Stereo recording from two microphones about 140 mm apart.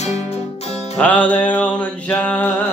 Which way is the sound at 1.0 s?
10° left (ahead or behind).